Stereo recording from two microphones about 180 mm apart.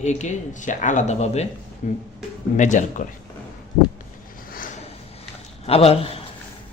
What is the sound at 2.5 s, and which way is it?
Speech, 45° left (ahead or behind).